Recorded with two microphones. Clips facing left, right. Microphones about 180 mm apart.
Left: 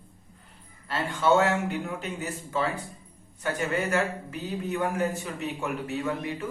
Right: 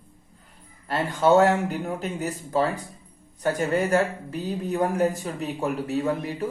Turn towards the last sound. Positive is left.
turn(degrees=-35)  # may be behind; listen again after turning